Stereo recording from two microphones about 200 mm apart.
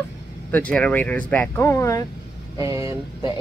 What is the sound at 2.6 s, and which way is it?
Speech, 15° right (ahead or behind).